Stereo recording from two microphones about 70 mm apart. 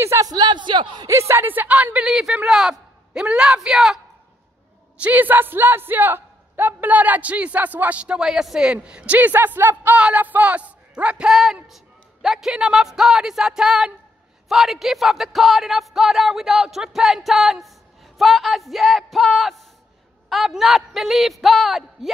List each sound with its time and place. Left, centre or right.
0.0 s a man's voice: right
0.3 s a man's voice: right
1.0 s speech: right
2.0 s a man's voice: centre
5.0 s speech: right
11.6 s a man's voice: centre